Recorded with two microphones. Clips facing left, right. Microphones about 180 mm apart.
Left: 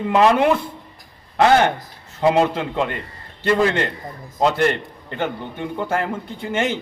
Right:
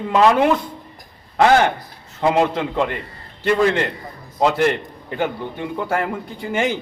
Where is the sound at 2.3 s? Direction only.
Centre (ahead or behind).